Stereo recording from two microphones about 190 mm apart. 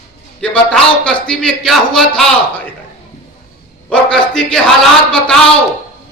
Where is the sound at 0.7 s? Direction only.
5° left (ahead or behind).